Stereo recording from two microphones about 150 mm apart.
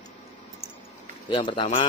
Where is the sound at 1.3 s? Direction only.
35° left (ahead or behind).